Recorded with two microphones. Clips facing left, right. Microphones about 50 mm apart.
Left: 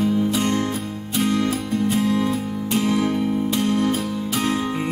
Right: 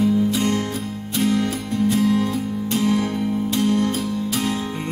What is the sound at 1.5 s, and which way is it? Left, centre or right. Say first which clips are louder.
Music: even; centre.